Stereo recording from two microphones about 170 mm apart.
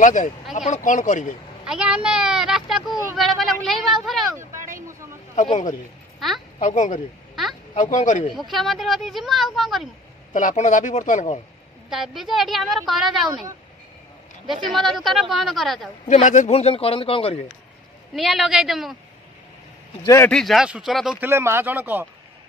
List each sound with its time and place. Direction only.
0.0 s speech: 50° left (ahead or behind)
1.7 s a woman's voice: 5° right (ahead or behind)
4.4 s a sound: 15° right (ahead or behind)
5.3 s speech: 45° left (ahead or behind)
6.1 s a child's voice: centre (ahead or behind)
6.6 s speech: 45° left (ahead or behind)
8.4 s a woman's voice: centre (ahead or behind)
10.3 s speech: 45° left (ahead or behind)
11.9 s a woman's voice: centre (ahead or behind)
14.7 s a woman's voice: centre (ahead or behind)
16.1 s a man's voice: 45° left (ahead or behind)
18.1 s a woman's voice: centre (ahead or behind)
20.2 s a woman's voice: centre (ahead or behind)
21.3 s speech: 15° right (ahead or behind)